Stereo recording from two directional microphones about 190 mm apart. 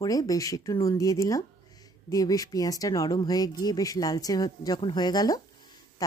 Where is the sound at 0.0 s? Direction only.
20° left (ahead or behind).